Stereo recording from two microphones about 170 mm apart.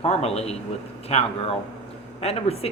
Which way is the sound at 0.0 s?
40° left (ahead or behind).